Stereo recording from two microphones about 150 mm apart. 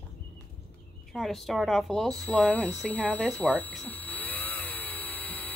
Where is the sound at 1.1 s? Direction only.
Centre (ahead or behind).